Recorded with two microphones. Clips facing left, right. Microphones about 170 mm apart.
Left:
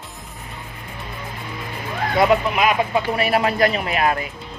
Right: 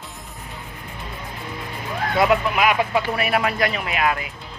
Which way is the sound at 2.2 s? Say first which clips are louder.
Left 2 dB; 25° left (ahead or behind).